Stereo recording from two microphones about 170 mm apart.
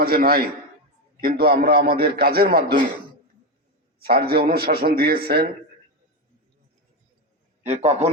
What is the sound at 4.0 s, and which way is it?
A man's voice, 60° right (ahead or behind).